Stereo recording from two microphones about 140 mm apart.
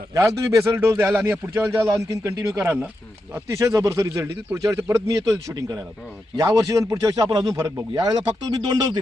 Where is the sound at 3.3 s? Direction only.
20° right (ahead or behind).